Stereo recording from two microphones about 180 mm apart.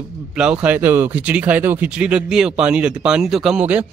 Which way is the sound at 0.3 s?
5° right (ahead or behind).